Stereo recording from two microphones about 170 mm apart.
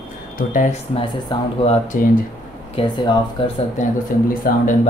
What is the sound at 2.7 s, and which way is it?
Speech, 30° left (ahead or behind).